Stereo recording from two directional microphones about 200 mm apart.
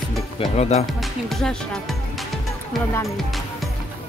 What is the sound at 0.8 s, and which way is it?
Speech, centre (ahead or behind).